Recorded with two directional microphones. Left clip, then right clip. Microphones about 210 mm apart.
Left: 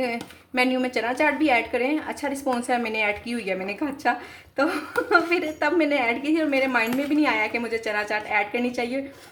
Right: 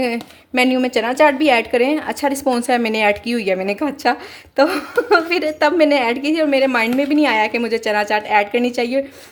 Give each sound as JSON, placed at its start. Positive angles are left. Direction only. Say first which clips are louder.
{"t": 0.0, "sound": "a woman's voice", "louder": "right 6 dB", "side_deg": -40}